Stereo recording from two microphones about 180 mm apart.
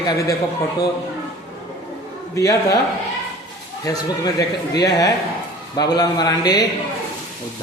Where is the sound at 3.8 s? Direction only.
20° left (ahead or behind).